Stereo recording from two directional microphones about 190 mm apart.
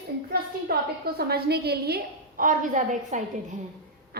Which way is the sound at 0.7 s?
55° right (ahead or behind).